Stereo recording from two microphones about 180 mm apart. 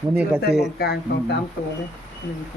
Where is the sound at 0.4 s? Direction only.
60° left (ahead or behind).